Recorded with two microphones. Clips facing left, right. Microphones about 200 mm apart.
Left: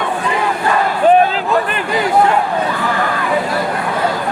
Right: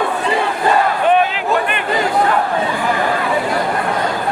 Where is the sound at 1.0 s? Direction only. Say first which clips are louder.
Left 6 dB; 40° left (ahead or behind).